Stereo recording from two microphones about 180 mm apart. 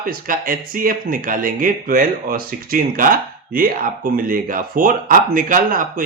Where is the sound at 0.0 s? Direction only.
50° right (ahead or behind).